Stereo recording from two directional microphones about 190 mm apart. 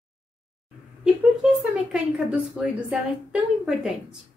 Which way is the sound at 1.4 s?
5° right (ahead or behind).